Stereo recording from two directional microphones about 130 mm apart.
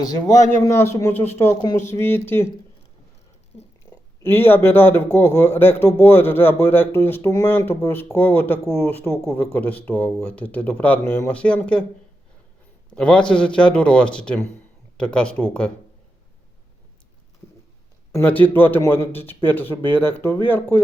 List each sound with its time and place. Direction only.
0.0 s a man's voice: 30° left (ahead or behind)
4.2 s a man's voice: 15° left (ahead or behind)
12.9 s a man's voice: 10° left (ahead or behind)
18.1 s a man's voice: 15° left (ahead or behind)